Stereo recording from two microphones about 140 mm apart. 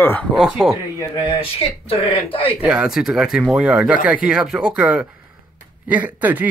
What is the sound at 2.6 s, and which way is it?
Speech, 5° right (ahead or behind).